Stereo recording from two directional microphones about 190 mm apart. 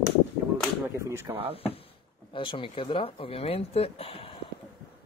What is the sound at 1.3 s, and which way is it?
Speech, 30° right (ahead or behind).